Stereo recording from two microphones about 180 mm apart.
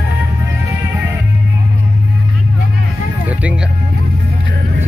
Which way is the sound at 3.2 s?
10° right (ahead or behind).